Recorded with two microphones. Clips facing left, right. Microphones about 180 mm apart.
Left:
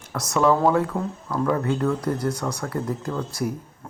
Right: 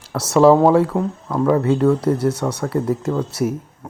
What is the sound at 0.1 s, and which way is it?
Speech, 30° right (ahead or behind).